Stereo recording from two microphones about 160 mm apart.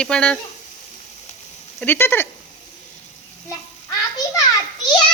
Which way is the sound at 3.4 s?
20° left (ahead or behind).